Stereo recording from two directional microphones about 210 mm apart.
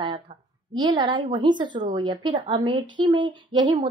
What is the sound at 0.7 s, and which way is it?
Speech, 20° right (ahead or behind).